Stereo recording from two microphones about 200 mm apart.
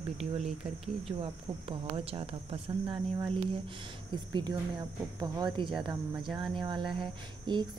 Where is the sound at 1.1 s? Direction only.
25° right (ahead or behind).